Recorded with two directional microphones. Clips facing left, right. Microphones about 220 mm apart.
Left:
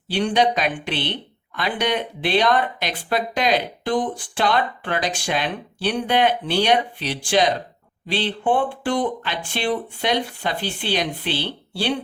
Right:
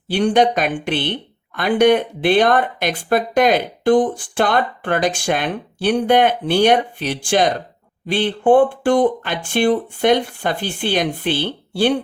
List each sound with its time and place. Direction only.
0.1 s speech: 50° right (ahead or behind)